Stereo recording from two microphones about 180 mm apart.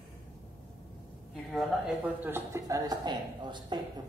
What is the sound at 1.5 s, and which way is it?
A woman's voice, centre (ahead or behind).